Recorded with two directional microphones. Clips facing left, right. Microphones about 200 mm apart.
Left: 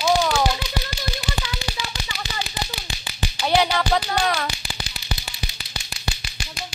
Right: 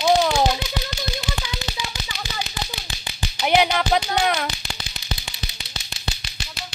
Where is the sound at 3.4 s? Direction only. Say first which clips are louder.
Right 1 dB; 15° right (ahead or behind).